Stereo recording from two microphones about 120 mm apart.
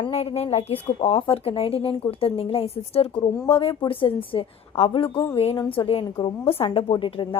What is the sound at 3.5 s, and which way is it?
Speech, 45° left (ahead or behind).